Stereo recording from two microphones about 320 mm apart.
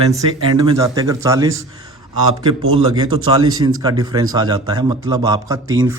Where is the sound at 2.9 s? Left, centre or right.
Centre.